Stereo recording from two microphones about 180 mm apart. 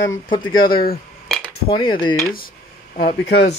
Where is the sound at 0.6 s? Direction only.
55° left (ahead or behind).